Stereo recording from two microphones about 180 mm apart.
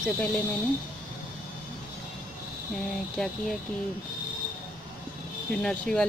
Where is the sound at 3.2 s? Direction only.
Centre (ahead or behind).